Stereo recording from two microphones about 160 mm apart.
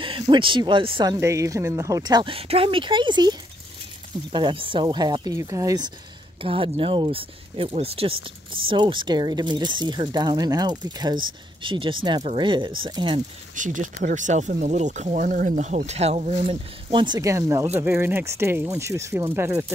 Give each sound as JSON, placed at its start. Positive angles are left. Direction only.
{"t": 0.0, "sound": "speech", "side_deg": -35}
{"t": 6.4, "sound": "speech", "side_deg": -35}
{"t": 13.6, "sound": "speech", "side_deg": -55}